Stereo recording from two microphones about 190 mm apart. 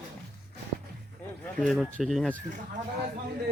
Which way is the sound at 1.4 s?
Centre (ahead or behind).